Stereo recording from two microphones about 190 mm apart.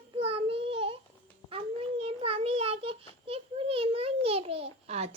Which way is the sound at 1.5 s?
30° right (ahead or behind).